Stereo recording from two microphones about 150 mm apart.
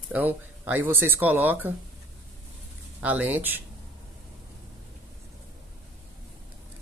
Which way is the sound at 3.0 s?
10° right (ahead or behind).